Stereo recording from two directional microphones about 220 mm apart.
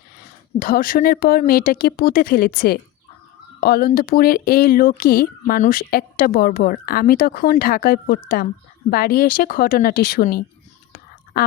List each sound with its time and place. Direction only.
0.2 s speech: 40° left (ahead or behind)